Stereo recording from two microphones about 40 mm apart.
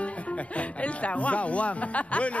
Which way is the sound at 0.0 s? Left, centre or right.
Left.